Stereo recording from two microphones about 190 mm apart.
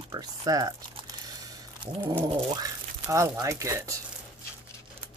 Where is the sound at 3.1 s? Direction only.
15° right (ahead or behind).